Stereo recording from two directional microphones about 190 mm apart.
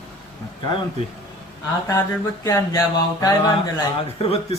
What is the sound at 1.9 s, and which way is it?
Mantra, 15° left (ahead or behind).